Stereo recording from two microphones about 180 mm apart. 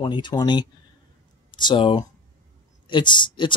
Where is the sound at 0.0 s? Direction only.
25° left (ahead or behind).